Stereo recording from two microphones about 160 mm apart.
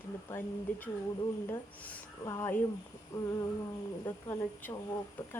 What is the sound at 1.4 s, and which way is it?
A woman's voice, 15° left (ahead or behind).